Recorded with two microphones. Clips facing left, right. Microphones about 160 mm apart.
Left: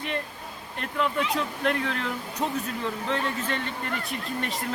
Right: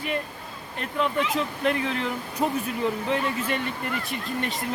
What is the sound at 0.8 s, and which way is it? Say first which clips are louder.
Speech: right 1 dB; centre (ahead or behind).